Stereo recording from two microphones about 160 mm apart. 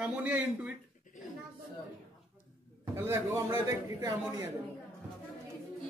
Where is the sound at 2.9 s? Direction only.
15° right (ahead or behind).